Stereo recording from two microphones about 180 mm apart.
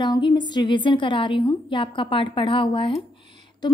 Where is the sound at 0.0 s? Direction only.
25° left (ahead or behind).